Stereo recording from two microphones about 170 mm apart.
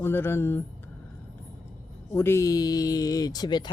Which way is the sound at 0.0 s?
15° left (ahead or behind).